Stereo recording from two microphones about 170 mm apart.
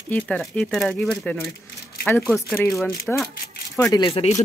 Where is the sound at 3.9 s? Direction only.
30° left (ahead or behind).